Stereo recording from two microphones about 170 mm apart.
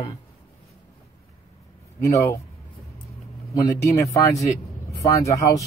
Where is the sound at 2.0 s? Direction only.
20° left (ahead or behind).